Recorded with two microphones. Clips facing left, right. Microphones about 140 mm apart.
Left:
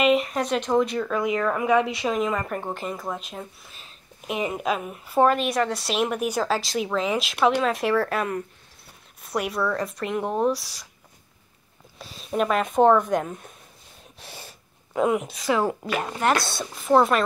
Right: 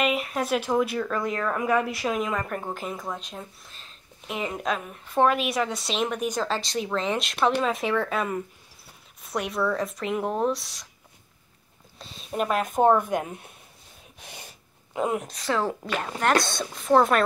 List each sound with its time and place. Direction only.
0.0 s speech: centre (ahead or behind)
1.8 s a woman's voice: 25° left (ahead or behind)
2.0 s speech: centre (ahead or behind)
12.0 s speech: centre (ahead or behind)
15.1 s speech: 5° left (ahead or behind)